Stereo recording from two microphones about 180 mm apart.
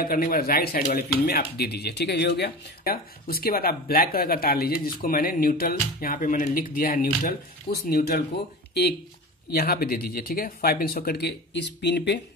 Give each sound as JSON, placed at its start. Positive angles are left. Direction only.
{"t": 0.0, "sound": "speech", "side_deg": 55}
{"t": 9.5, "sound": "speech", "side_deg": 60}